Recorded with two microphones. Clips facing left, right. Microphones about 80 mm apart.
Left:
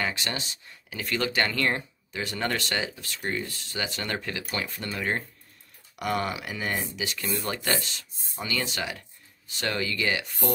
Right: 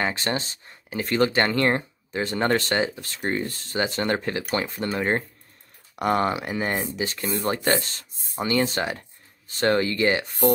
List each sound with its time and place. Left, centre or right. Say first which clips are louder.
0.0 s speech: right 5 dB; right